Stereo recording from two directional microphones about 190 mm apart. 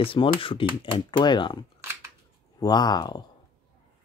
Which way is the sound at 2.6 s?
20° left (ahead or behind).